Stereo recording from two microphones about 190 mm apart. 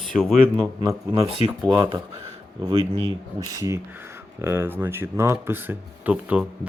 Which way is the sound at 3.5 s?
15° right (ahead or behind).